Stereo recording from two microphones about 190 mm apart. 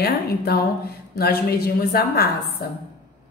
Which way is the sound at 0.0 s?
55° left (ahead or behind).